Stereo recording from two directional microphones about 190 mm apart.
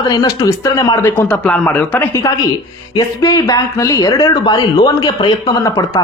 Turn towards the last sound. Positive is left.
turn(degrees=20)  # may be behind; listen again after turning